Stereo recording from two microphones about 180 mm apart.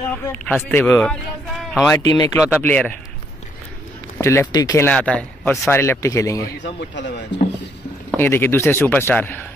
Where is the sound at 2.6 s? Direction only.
10° left (ahead or behind).